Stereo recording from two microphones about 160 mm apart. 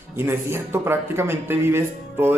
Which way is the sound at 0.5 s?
15° right (ahead or behind).